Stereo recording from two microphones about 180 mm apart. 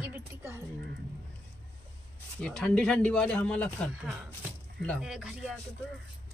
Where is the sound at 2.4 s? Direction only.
5° left (ahead or behind).